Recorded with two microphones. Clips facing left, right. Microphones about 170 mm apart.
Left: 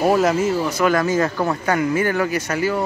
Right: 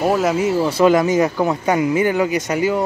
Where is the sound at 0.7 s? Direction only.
30° right (ahead or behind).